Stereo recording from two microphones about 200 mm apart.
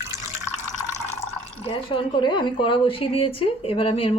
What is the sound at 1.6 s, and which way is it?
A woman's voice, 25° left (ahead or behind).